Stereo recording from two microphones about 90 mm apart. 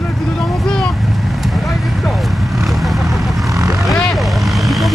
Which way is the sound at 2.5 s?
Centre (ahead or behind).